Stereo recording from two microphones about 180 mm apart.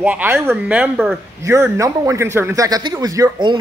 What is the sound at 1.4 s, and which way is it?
Speech, 15° right (ahead or behind).